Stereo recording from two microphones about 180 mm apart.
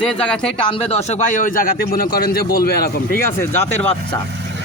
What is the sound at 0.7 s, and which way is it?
Speech, 30° left (ahead or behind).